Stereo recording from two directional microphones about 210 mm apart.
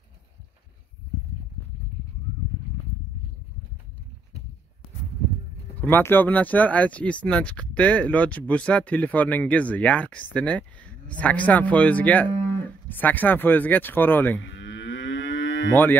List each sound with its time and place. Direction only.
5.8 s speech: 10° left (ahead or behind)
14.5 s moo: 60° left (ahead or behind)
15.7 s speech: 10° left (ahead or behind)